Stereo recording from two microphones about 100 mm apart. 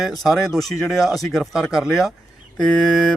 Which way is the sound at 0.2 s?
Centre (ahead or behind).